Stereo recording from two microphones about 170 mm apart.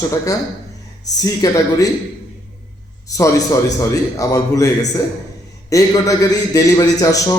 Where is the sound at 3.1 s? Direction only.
20° left (ahead or behind).